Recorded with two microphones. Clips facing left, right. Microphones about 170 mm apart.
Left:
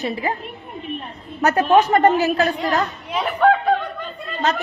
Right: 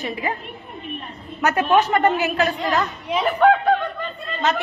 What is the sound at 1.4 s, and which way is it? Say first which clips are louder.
A woman's voice: left 3 dB; 40° left (ahead or behind).